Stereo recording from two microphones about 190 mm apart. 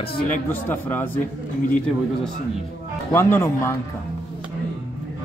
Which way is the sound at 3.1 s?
15° left (ahead or behind).